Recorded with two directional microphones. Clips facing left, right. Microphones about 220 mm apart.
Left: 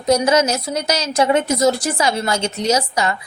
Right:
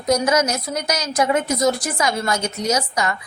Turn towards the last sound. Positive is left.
turn(degrees=30)  # may be behind; listen again after turning